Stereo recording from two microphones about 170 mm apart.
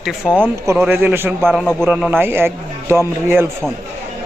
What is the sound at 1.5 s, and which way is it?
Speech, 5° left (ahead or behind).